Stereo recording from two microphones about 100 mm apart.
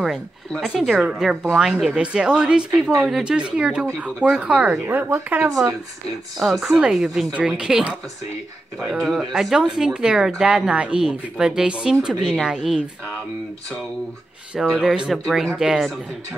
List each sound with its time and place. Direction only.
0.5 s speech: centre (ahead or behind); by 5.5 s 20° right (ahead or behind)
6.4 s speech: centre (ahead or behind)
8.9 s speech: centre (ahead or behind)
14.8 s speech: 5° right (ahead or behind)